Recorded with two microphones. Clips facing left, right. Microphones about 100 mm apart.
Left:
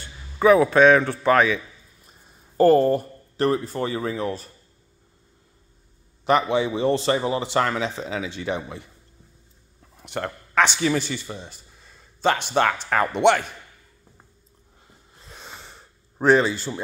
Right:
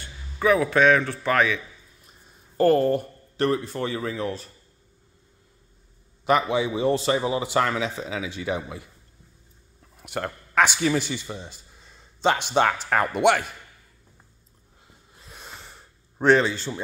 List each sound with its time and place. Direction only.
0.4 s a man's voice: 15° left (ahead or behind)
6.2 s a man's voice: 5° right (ahead or behind)
10.0 s a man's voice: 10° right (ahead or behind)
15.1 s a sound: 5° right (ahead or behind)